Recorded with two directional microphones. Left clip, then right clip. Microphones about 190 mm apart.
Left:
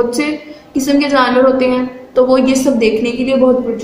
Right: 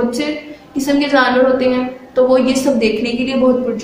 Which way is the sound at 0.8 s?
20° left (ahead or behind).